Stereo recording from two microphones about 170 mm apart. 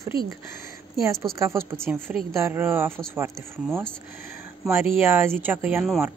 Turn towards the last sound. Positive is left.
turn(degrees=-10)  # may be behind; listen again after turning